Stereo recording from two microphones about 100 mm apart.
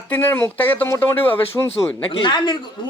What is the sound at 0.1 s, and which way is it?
Speech, 20° left (ahead or behind).